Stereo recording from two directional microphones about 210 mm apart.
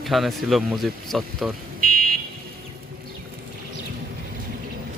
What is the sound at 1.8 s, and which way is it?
Fire alarm, 45° right (ahead or behind).